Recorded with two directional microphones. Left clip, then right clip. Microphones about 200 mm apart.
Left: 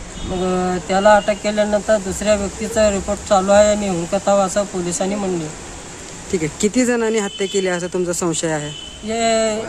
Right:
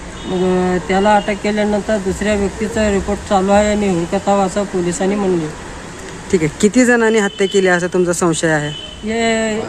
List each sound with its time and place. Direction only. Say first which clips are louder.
0.5 s speech: right 1 dB; 10° left (ahead or behind)
6.3 s speech: right 5 dB; centre (ahead or behind)
9.0 s speech: even; 15° left (ahead or behind)